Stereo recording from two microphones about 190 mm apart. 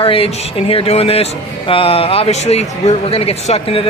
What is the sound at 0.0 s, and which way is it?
A man's voice, 30° left (ahead or behind).